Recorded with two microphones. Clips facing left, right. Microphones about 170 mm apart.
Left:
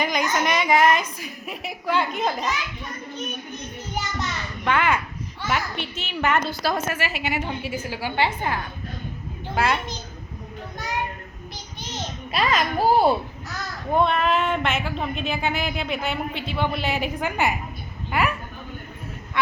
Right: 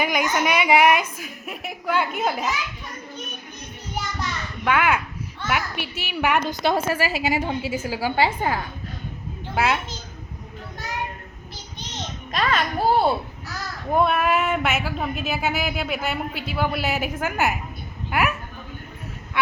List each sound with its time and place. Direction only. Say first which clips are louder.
0.0 s a woman's voice: right 1 dB; 5° right (ahead or behind)
3.9 s children playing: even; centre (ahead or behind)
5.5 s a woman's voice: even; 10° right (ahead or behind); by 8.5 s 35° right (ahead or behind)
12.3 s a child's voice: left 1 dB; 10° left (ahead or behind)
13.9 s speech: right 1 dB; 5° right (ahead or behind)